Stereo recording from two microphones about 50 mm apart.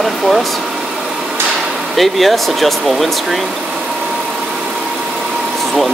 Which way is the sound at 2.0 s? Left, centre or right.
Centre.